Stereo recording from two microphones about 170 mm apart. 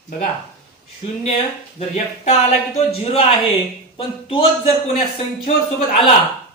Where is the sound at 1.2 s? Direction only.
40° left (ahead or behind).